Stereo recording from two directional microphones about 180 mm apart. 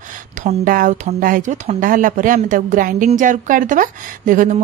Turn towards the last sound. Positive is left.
turn(degrees=-45)  # may be behind; listen again after turning